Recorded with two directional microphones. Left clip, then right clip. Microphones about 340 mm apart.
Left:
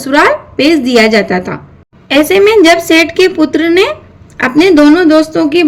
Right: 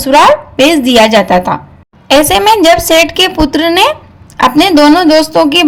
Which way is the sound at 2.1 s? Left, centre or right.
Right.